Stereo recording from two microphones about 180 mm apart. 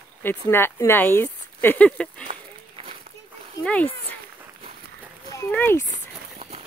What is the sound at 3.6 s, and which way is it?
Speech, 5° left (ahead or behind).